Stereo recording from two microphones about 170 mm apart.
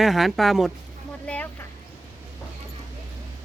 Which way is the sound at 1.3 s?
5° left (ahead or behind).